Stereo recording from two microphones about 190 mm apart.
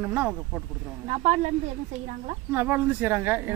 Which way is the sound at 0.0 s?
10° right (ahead or behind).